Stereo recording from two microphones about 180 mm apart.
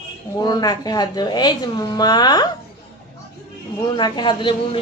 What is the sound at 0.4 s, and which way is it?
A woman's voice, 20° left (ahead or behind).